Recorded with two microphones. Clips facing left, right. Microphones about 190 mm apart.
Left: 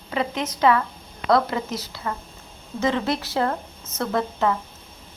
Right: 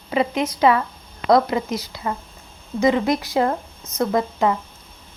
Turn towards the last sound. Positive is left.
turn(degrees=-15)  # may be behind; listen again after turning